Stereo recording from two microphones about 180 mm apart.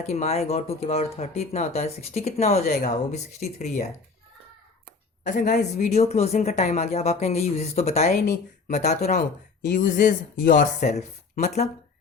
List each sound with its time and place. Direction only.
0.1 s a woman's voice: 35° left (ahead or behind)
5.2 s a woman's voice: 45° left (ahead or behind)
8.1 s speech: 55° left (ahead or behind)
8.7 s a woman's voice: 40° left (ahead or behind)
9.6 s speech: 65° left (ahead or behind)
9.8 s speech: 50° left (ahead or behind)